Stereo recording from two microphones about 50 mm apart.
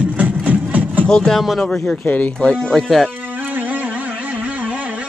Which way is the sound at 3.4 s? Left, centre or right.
Right.